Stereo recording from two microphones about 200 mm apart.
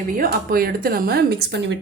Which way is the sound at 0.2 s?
50° right (ahead or behind).